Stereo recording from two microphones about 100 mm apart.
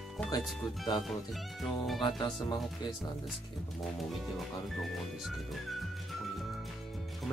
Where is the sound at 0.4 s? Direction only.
Centre (ahead or behind).